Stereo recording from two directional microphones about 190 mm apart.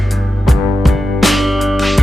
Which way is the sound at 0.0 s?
Centre (ahead or behind).